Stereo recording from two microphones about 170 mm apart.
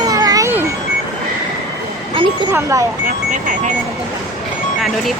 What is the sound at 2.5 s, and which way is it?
Speech, 15° right (ahead or behind).